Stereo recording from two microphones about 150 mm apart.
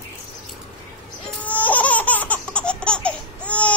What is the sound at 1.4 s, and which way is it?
Laughter, 10° left (ahead or behind).